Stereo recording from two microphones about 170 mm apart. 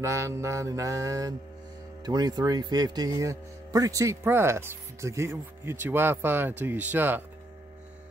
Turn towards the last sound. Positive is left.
turn(degrees=-10)  # may be behind; listen again after turning